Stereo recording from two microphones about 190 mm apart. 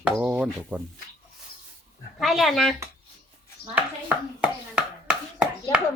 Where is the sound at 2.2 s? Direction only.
Centre (ahead or behind).